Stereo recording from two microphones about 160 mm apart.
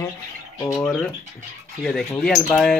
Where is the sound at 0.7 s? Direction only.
5° left (ahead or behind).